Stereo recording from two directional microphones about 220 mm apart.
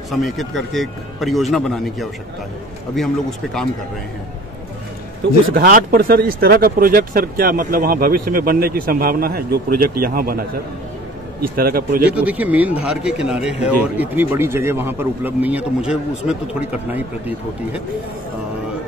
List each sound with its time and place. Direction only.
0.1 s speech: centre (ahead or behind)
5.5 s speech: 40° right (ahead or behind)
11.5 s speech: 40° right (ahead or behind)
12.1 s speech: 5° right (ahead or behind)